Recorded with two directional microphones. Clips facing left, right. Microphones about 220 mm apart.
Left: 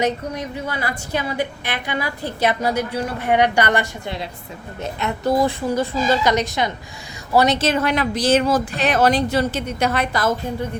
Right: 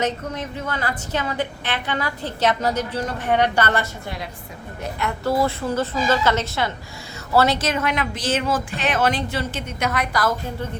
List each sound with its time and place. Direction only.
0.0 s a woman's voice: 10° left (ahead or behind)